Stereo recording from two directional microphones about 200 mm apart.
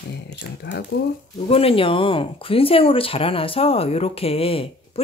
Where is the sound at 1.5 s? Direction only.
30° left (ahead or behind).